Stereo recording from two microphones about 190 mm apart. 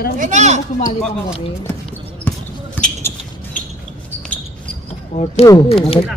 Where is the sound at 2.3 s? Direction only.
10° left (ahead or behind).